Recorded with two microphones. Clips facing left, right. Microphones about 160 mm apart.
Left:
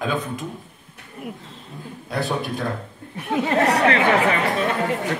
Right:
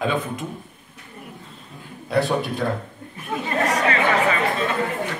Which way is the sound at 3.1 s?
75° left (ahead or behind).